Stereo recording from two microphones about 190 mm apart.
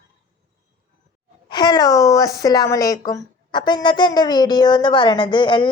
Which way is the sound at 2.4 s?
20° left (ahead or behind).